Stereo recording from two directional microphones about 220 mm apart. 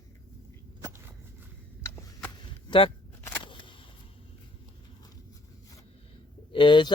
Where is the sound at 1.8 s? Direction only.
10° left (ahead or behind).